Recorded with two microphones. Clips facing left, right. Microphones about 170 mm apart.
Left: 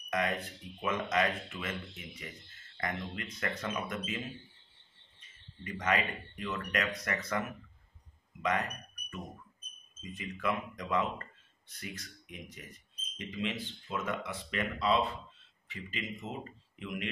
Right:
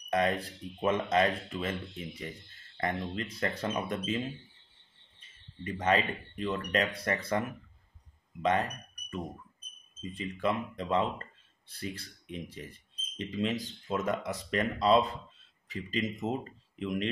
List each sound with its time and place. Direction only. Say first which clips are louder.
0.1 s speech: right 4 dB; 30° right (ahead or behind)
5.6 s speech: right 4 dB; 30° right (ahead or behind)
10.0 s speech: right 3 dB; 30° right (ahead or behind)